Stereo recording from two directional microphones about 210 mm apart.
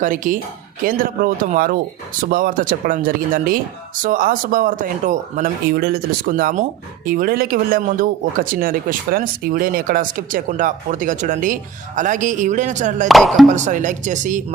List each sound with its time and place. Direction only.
0.0 s speech: 40° right (ahead or behind)
13.1 s speech: centre (ahead or behind)
13.6 s speech: 35° right (ahead or behind)